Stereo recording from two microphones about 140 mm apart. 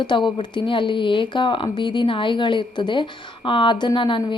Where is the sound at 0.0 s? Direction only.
35° left (ahead or behind).